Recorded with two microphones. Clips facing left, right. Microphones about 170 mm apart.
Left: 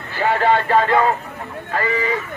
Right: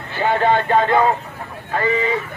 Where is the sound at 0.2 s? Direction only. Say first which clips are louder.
Even; 20° right (ahead or behind).